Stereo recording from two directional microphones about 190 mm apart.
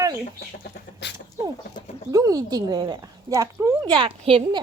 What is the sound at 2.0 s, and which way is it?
A woman's voice, 20° right (ahead or behind).